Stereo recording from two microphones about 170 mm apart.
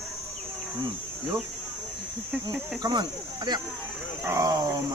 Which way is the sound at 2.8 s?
25° right (ahead or behind).